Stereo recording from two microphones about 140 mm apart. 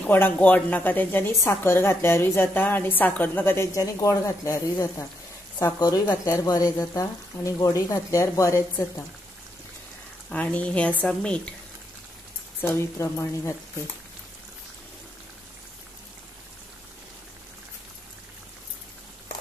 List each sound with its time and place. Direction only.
0.0 s a woman's voice: 10° left (ahead or behind)
10.3 s a woman's voice: 10° left (ahead or behind)
12.6 s speech: 20° left (ahead or behind)